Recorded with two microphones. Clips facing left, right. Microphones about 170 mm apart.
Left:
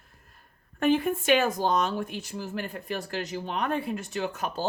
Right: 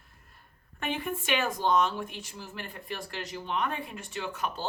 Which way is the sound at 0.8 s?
40° left (ahead or behind).